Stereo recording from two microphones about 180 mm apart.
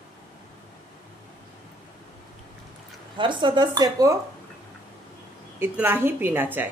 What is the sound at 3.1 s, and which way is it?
Speech, 25° right (ahead or behind).